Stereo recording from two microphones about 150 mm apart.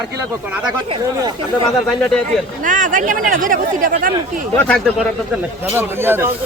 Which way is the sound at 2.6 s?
60° right (ahead or behind).